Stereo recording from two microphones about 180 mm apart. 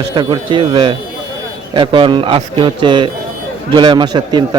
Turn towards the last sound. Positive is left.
turn(degrees=-25)  # may be behind; listen again after turning